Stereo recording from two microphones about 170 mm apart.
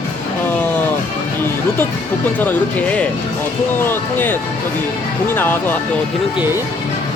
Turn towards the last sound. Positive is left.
turn(degrees=10)  # may be behind; listen again after turning